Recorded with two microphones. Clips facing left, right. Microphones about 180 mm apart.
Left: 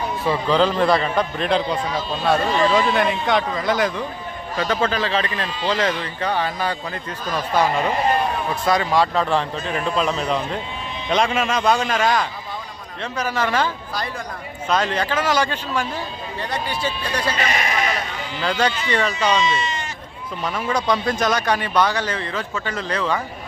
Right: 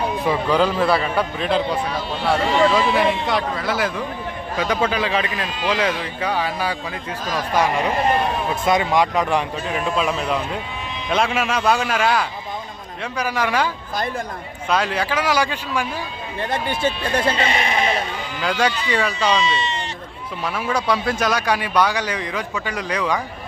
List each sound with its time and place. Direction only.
0.3 s speech: 10° right (ahead or behind)
14.7 s speech: 10° right (ahead or behind)
16.4 s speech: 50° right (ahead or behind)
17.2 s speech: 25° right (ahead or behind)
18.3 s speech: 10° right (ahead or behind)
20.4 s speech: 5° right (ahead or behind)